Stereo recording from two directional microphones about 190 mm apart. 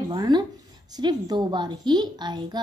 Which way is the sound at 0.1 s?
20° right (ahead or behind).